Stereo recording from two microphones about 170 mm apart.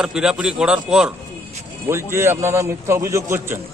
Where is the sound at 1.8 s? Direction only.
15° right (ahead or behind).